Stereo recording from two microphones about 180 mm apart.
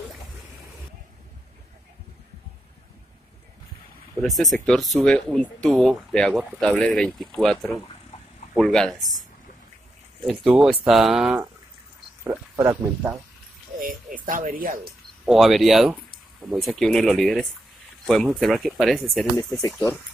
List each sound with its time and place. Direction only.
4.2 s speech: centre (ahead or behind)
8.5 s speech: 5° left (ahead or behind)
10.2 s speech: centre (ahead or behind)
12.3 s speech: 15° right (ahead or behind)
13.7 s speech: 50° right (ahead or behind)
15.2 s speech: centre (ahead or behind)
19.6 s speech: 15° left (ahead or behind)